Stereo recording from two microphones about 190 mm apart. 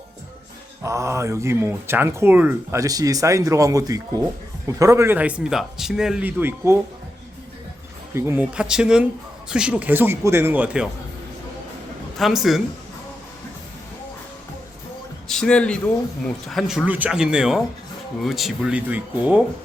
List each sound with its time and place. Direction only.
0.8 s speech: 15° right (ahead or behind)
8.1 s speech: 15° right (ahead or behind)
12.1 s speech: centre (ahead or behind)
15.3 s a man's voice: 5° left (ahead or behind)